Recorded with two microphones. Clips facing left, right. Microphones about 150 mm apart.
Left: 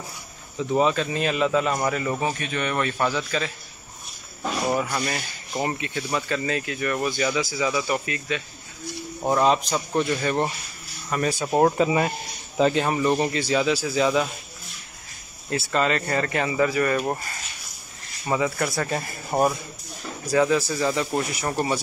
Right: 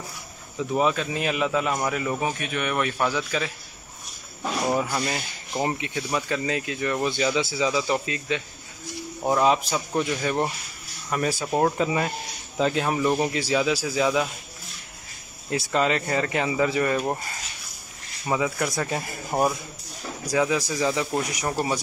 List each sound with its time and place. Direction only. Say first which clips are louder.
0.7 s speech: left 2 dB; 5° right (ahead or behind)
5.6 s speech: even; 15° right (ahead or behind)
9.2 s speech: left 1 dB; 5° right (ahead or behind)
11.4 s speech: left 5 dB; 10° left (ahead or behind); by 14.3 s 5° right (ahead or behind)
15.5 s speech: even; 15° right (ahead or behind)
18.3 s speech: left 1 dB; 5° right (ahead or behind)